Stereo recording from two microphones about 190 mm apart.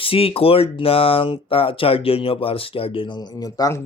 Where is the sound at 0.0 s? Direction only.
30° left (ahead or behind).